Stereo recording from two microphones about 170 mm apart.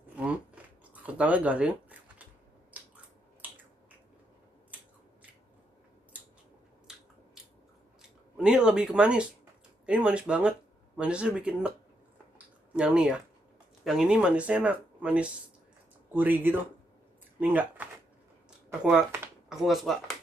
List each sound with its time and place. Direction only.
0.1 s a sound: 5° right (ahead or behind)
3.4 s finger snapping: 10° right (ahead or behind)
6.9 s crushing: 5° right (ahead or behind)
8.4 s speech: 5° right (ahead or behind)
12.7 s speech: 5° right (ahead or behind)